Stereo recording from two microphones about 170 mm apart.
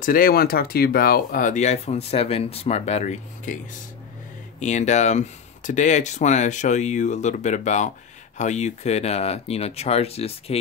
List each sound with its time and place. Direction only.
0.0 s speech: 55° left (ahead or behind)
4.6 s speech: 45° left (ahead or behind)